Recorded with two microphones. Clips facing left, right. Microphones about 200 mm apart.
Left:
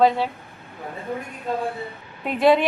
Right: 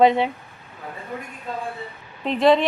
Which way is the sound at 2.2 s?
5° left (ahead or behind).